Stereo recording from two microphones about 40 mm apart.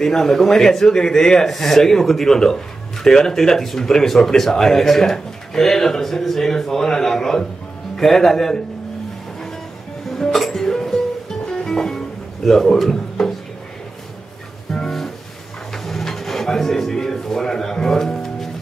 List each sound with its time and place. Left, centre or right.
0.0 s speech: centre
10.1 s music: centre
12.4 s speech: centre
14.7 s music: centre
15.7 s a sound: centre